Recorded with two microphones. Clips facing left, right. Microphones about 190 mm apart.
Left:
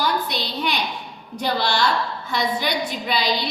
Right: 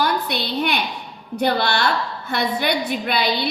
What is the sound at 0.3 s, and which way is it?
A woman's voice, 60° right (ahead or behind).